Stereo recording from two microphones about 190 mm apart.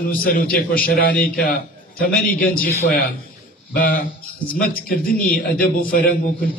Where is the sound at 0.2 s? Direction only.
50° left (ahead or behind).